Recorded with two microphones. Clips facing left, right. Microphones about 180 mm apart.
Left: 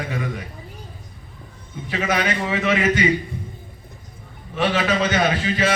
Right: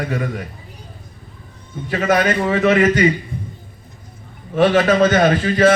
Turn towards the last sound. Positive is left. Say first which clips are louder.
# right 7 dB
turn(degrees=-50)  # may be behind; listen again after turning